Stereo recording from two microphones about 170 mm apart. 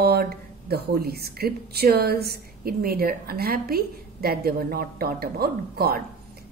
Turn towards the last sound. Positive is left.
turn(degrees=-65)  # may be behind; listen again after turning